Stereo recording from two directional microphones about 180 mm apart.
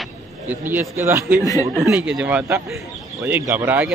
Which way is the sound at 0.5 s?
10° right (ahead or behind).